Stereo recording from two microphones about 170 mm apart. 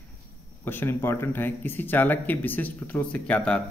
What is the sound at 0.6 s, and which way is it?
A man's voice, 10° left (ahead or behind).